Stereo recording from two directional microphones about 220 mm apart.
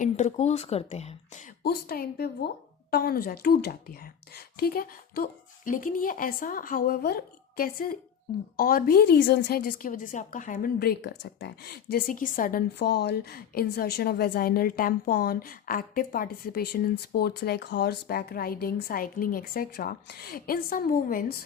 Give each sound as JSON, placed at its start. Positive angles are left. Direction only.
{"t": 0.0, "sound": "speech", "side_deg": 30}
{"t": 1.6, "sound": "a woman's voice", "side_deg": 45}